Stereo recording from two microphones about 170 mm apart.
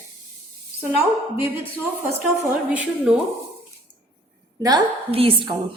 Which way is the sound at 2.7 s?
10° right (ahead or behind).